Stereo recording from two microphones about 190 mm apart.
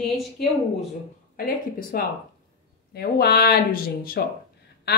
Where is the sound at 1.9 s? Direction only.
55° left (ahead or behind).